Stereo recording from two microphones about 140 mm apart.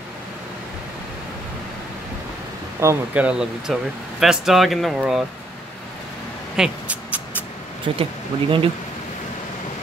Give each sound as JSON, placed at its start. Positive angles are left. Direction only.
{"t": 2.8, "sound": "speech", "side_deg": -20}
{"t": 3.3, "sound": "speech", "side_deg": -5}
{"t": 6.5, "sound": "speech", "side_deg": -5}
{"t": 7.8, "sound": "speech", "side_deg": -40}